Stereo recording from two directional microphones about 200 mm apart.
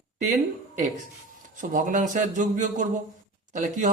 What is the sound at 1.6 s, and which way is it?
Speech, 40° right (ahead or behind).